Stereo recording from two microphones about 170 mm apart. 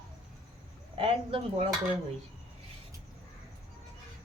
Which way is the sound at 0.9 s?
30° right (ahead or behind).